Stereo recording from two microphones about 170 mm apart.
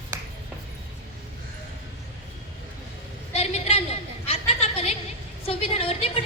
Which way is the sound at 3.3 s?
40° left (ahead or behind).